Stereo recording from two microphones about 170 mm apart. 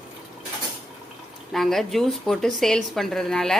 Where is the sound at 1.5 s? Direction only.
Centre (ahead or behind).